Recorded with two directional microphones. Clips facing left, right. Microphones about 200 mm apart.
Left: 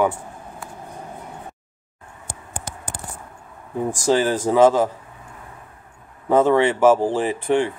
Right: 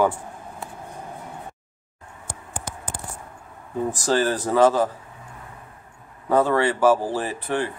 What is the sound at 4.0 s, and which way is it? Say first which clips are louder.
Speech: left 4 dB; 15° left (ahead or behind).